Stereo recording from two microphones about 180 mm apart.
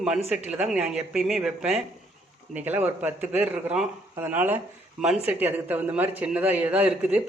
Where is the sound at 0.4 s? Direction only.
5° right (ahead or behind).